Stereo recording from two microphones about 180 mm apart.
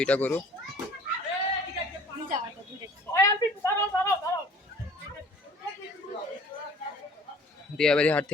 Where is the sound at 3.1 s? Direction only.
20° left (ahead or behind).